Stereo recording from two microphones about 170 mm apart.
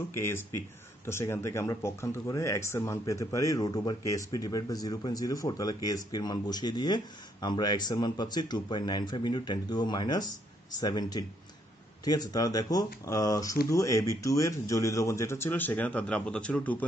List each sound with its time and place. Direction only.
0.1 s speech: 15° left (ahead or behind)